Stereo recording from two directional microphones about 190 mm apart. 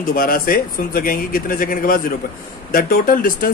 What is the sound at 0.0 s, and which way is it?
Speech, 50° left (ahead or behind).